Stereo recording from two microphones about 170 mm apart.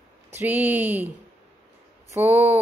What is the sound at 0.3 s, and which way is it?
Speech, 10° right (ahead or behind).